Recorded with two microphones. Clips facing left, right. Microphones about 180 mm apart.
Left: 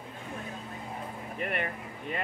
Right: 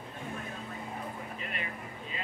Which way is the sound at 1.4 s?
60° left (ahead or behind).